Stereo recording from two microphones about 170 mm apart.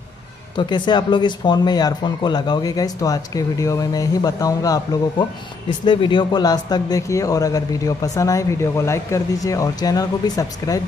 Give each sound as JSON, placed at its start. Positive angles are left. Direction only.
{"t": 0.6, "sound": "speech", "side_deg": 25}
{"t": 5.9, "sound": "speech", "side_deg": 30}